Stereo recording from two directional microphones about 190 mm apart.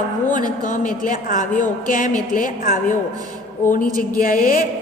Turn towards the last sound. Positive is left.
turn(degrees=45)  # may be behind; listen again after turning